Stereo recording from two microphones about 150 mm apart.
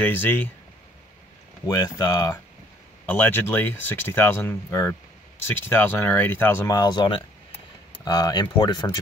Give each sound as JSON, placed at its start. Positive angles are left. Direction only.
{"t": 0.0, "sound": "speech", "side_deg": 15}
{"t": 1.7, "sound": "speech", "side_deg": 25}
{"t": 3.1, "sound": "speech", "side_deg": 15}
{"t": 6.7, "sound": "speech", "side_deg": 25}